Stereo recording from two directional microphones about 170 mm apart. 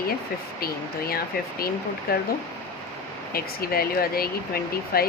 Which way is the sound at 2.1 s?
65° left (ahead or behind).